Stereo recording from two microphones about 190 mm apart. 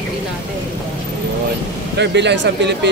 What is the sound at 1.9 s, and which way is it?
Speech, 65° right (ahead or behind).